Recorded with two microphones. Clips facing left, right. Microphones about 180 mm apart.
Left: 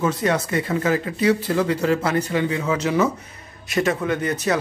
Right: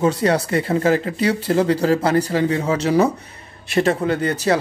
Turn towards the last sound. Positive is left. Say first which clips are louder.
# right 3 dB
turn(degrees=-30)  # may be behind; listen again after turning